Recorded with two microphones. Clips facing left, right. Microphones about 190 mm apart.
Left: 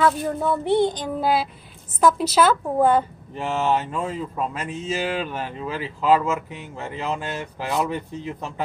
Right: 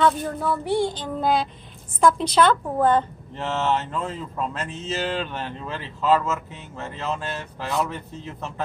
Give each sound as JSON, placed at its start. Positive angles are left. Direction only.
{"t": 0.4, "sound": "speech", "side_deg": 20}